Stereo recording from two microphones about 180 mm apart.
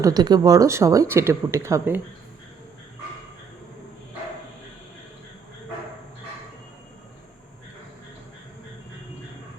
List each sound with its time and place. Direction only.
0.0 s speech: 20° right (ahead or behind)